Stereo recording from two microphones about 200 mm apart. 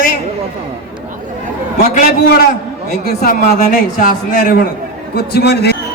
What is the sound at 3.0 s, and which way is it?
Speech, 50° left (ahead or behind).